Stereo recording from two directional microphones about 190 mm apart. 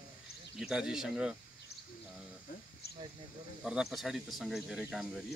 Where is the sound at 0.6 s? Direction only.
5° right (ahead or behind).